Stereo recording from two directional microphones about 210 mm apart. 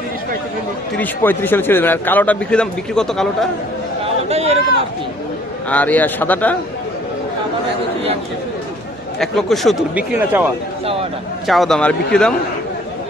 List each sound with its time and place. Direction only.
0.9 s speech: 10° left (ahead or behind)
4.0 s chatter: 30° right (ahead or behind)
5.7 s speech: 5° left (ahead or behind)
9.2 s speech: centre (ahead or behind)